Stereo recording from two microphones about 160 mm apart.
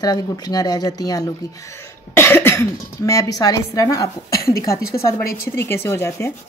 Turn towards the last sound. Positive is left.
turn(degrees=15)  # may be behind; listen again after turning